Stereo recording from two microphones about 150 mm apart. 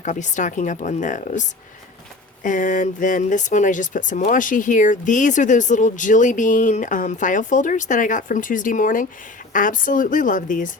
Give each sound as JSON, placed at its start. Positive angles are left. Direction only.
{"t": 0.0, "sound": "speech", "side_deg": 55}